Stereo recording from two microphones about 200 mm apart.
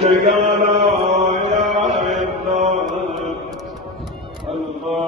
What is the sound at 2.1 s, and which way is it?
Mantra, 35° right (ahead or behind).